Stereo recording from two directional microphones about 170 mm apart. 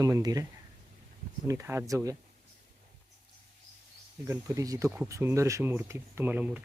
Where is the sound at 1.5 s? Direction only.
15° right (ahead or behind).